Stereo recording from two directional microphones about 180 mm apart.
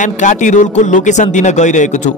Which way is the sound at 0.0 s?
45° left (ahead or behind).